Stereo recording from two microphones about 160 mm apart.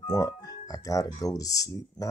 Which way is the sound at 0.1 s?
20° left (ahead or behind).